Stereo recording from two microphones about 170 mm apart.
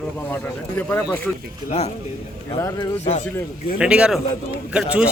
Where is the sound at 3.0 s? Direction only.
40° left (ahead or behind).